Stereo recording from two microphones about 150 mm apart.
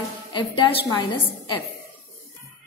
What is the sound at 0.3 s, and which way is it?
A woman's voice, 35° left (ahead or behind).